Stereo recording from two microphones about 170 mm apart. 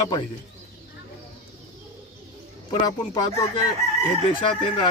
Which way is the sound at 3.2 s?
25° left (ahead or behind).